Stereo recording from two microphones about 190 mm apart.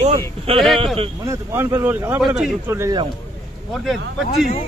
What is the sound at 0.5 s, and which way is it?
Speech, 30° right (ahead or behind).